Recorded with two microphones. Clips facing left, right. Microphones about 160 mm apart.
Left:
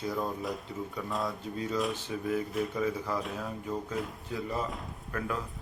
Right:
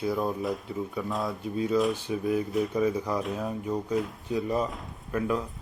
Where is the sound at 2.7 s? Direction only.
15° right (ahead or behind).